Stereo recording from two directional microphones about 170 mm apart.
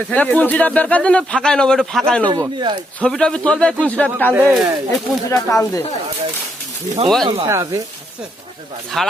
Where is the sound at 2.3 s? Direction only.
25° right (ahead or behind).